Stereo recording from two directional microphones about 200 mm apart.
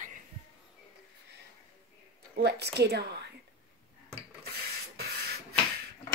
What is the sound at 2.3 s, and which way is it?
Speech, 55° right (ahead or behind).